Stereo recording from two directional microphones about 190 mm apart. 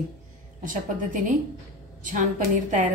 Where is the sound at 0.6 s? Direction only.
45° right (ahead or behind).